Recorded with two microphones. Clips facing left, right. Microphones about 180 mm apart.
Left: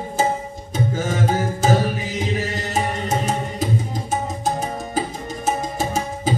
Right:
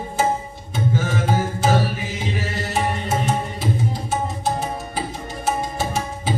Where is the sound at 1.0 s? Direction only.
40° left (ahead or behind).